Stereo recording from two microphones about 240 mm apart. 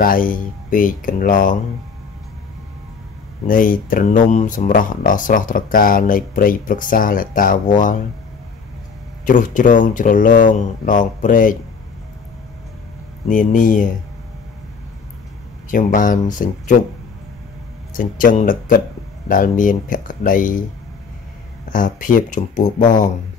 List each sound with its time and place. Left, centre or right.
0.0 s speech: left
3.4 s speech: left
9.2 s speech: left
13.3 s speech: left
15.7 s speech: left
17.9 s speech: left
21.7 s speech: left